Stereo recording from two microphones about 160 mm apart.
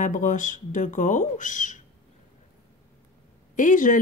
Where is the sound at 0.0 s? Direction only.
50° left (ahead or behind).